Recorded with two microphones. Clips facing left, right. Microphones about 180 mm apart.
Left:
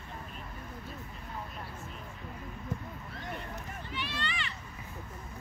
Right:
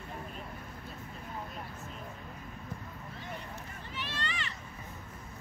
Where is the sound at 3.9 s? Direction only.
40° right (ahead or behind).